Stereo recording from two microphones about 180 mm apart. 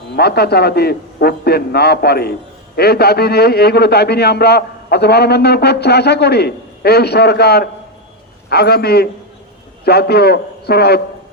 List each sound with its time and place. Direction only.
0.2 s a man's voice: 60° left (ahead or behind)